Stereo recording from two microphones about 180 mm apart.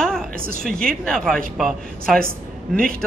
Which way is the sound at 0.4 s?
55° right (ahead or behind).